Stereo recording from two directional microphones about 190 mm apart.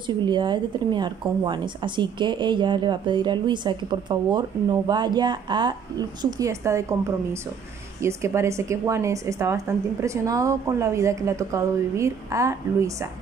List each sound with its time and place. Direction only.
0.0 s a woman's voice: 25° right (ahead or behind)
8.0 s speech: 15° right (ahead or behind)